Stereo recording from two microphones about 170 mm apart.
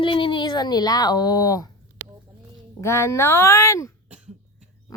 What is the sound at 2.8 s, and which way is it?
Speech, 15° left (ahead or behind).